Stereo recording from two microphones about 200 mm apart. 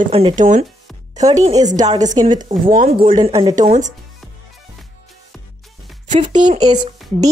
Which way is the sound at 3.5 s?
40° right (ahead or behind).